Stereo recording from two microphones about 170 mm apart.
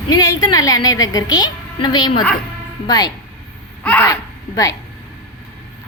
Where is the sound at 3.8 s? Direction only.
10° left (ahead or behind).